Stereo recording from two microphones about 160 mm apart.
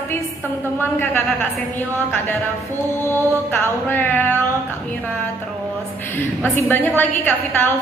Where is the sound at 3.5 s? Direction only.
10° left (ahead or behind).